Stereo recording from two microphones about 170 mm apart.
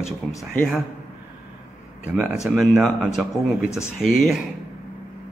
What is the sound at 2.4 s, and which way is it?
Speech, 5° right (ahead or behind).